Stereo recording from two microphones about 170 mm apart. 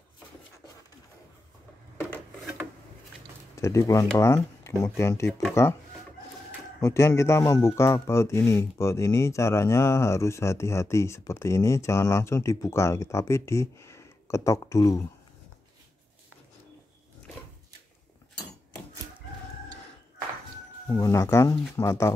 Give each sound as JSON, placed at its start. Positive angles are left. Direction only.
{"t": 2.0, "sound": "rub", "side_deg": 10}
{"t": 3.5, "sound": "speech", "side_deg": 15}
{"t": 6.8, "sound": "speech", "side_deg": 15}
{"t": 20.9, "sound": "speech", "side_deg": 20}